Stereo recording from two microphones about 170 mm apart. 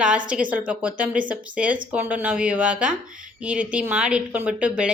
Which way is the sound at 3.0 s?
50° right (ahead or behind).